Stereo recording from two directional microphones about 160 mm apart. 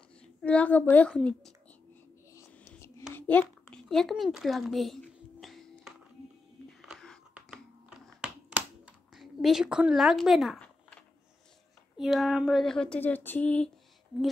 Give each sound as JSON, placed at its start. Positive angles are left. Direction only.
{"t": 0.2, "sound": "a woman's voice", "side_deg": 5}
{"t": 2.3, "sound": "whispering", "side_deg": 15}
{"t": 3.2, "sound": "a child's voice", "side_deg": 10}
{"t": 5.4, "sound": "music", "side_deg": 0}
{"t": 6.8, "sound": "whispering", "side_deg": 0}
{"t": 8.2, "sound": "a sound", "side_deg": -5}
{"t": 12.0, "sound": "speech", "side_deg": 0}